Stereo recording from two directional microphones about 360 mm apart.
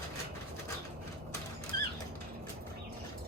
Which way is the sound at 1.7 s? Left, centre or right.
Right.